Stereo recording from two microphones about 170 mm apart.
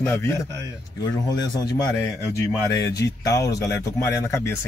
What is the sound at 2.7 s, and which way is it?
A man's voice, 20° left (ahead or behind).